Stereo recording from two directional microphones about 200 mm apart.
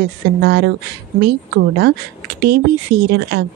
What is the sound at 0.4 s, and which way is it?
Speech, 55° right (ahead or behind).